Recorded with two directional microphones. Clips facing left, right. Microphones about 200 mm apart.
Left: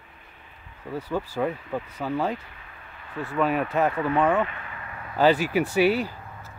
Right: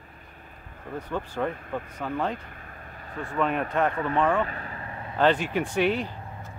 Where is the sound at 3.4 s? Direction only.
5° left (ahead or behind).